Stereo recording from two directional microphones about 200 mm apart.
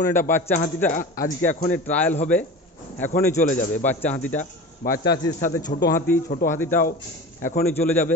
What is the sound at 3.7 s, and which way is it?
Speech, 10° left (ahead or behind).